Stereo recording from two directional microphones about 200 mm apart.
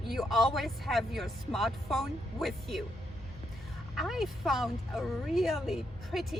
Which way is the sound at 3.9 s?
Centre (ahead or behind).